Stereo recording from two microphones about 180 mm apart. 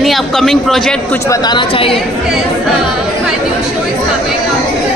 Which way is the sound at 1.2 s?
20° left (ahead or behind).